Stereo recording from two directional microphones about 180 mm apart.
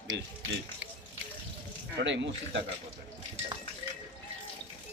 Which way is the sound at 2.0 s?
80° right.